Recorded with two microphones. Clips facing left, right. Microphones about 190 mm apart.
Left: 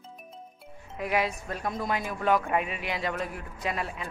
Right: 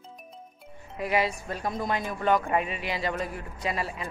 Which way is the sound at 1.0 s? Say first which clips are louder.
Right 1 dB; centre (ahead or behind).